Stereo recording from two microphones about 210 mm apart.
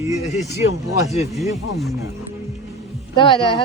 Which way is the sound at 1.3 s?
Centre (ahead or behind).